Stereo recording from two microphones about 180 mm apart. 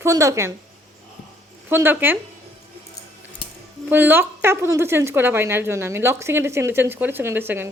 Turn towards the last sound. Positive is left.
turn(degrees=-10)  # may be behind; listen again after turning